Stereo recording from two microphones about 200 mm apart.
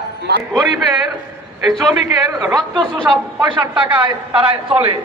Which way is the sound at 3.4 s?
20° right (ahead or behind).